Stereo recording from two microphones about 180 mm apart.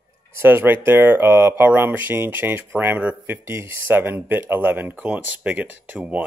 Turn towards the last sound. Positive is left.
turn(degrees=-10)  # may be behind; listen again after turning